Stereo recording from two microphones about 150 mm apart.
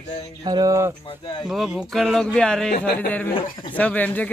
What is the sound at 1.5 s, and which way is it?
A man's voice, 5° right (ahead or behind).